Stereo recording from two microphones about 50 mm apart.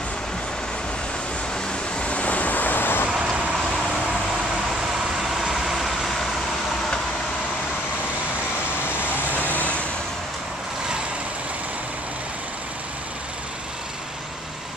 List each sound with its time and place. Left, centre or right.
2.0 s vehicle: left
5.0 s vehicle: centre
9.3 s vehicle: left